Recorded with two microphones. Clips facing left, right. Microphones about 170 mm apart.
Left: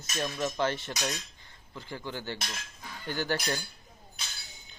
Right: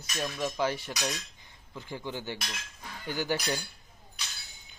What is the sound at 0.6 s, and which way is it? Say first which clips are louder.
Cutlery: right 1 dB; 10° right (ahead or behind).